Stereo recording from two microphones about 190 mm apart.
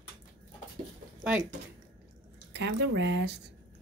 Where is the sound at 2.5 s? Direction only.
65° right (ahead or behind).